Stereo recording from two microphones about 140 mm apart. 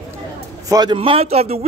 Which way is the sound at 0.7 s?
30° right (ahead or behind).